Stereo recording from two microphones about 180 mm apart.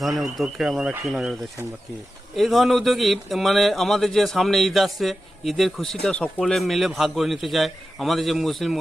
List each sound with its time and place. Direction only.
0.0 s speech: centre (ahead or behind)